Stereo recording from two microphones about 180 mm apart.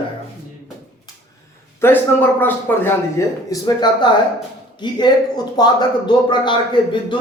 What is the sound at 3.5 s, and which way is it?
Speech, 25° left (ahead or behind).